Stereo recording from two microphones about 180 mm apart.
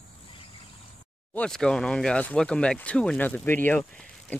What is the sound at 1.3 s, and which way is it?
Speech, 5° left (ahead or behind).